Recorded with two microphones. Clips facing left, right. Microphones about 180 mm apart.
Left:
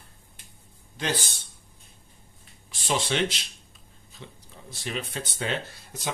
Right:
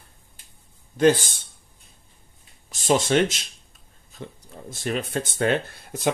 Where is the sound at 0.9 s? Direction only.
50° right (ahead or behind).